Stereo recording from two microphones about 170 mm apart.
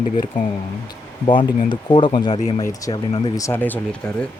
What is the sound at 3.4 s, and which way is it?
Speech, 10° left (ahead or behind).